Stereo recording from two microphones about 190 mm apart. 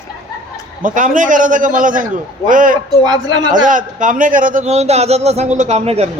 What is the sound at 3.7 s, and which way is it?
Speech, 45° right (ahead or behind).